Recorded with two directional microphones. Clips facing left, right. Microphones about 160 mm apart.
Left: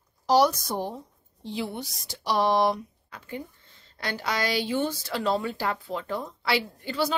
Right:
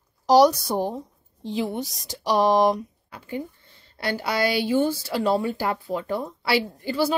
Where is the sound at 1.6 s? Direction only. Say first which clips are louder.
Right 5 dB; 40° right (ahead or behind).